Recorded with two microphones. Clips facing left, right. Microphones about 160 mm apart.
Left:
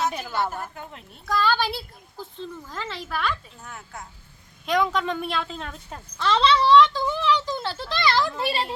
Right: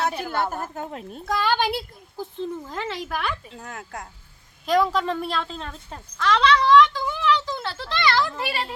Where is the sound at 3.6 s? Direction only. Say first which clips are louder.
Right 4 dB; 75° right (ahead or behind).